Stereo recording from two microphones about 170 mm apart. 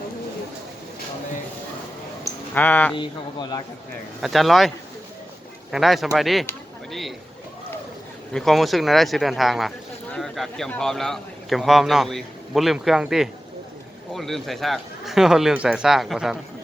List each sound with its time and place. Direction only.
2.6 s speech: 10° left (ahead or behind)
4.2 s speech: centre (ahead or behind)
5.7 s speech: centre (ahead or behind)
8.3 s speech: centre (ahead or behind)